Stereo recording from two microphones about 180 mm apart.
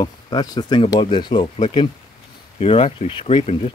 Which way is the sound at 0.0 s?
20° left (ahead or behind).